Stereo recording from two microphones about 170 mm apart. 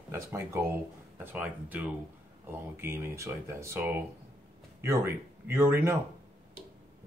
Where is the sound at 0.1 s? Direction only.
15° right (ahead or behind).